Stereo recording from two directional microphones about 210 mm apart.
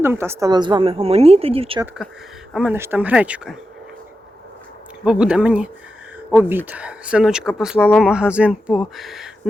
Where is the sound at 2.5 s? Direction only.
10° right (ahead or behind).